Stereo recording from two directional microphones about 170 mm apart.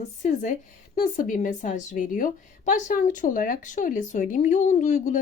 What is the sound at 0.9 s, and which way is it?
A woman's voice, 55° left (ahead or behind).